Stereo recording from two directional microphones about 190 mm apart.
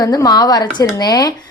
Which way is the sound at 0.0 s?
20° left (ahead or behind).